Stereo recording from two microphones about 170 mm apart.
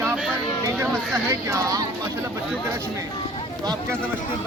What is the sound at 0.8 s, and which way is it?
Speech, 15° right (ahead or behind).